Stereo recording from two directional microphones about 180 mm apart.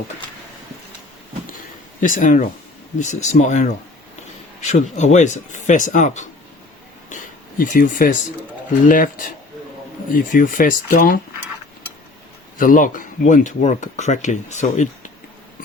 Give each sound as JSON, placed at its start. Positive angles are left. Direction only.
{"t": 2.0, "sound": "speech", "side_deg": 45}
{"t": 7.6, "sound": "speech", "side_deg": 50}
{"t": 12.5, "sound": "speech", "side_deg": 50}